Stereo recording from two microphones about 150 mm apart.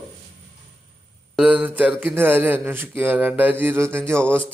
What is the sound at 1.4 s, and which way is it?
Speech, 10° right (ahead or behind).